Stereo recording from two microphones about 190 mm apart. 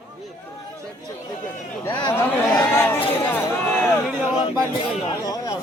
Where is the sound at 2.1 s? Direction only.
15° left (ahead or behind).